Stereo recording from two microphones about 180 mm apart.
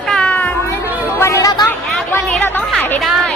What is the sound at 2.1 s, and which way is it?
Chatter, 15° left (ahead or behind).